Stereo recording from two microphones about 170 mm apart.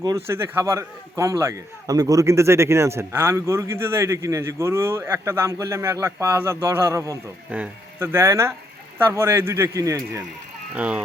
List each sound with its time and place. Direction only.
0.3 s a man's voice: 15° right (ahead or behind)
10.8 s a man's voice: 5° right (ahead or behind)